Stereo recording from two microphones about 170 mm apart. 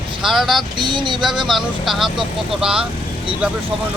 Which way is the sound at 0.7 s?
25° right (ahead or behind).